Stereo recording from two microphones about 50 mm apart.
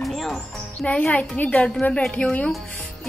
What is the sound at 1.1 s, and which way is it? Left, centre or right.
Speech, left.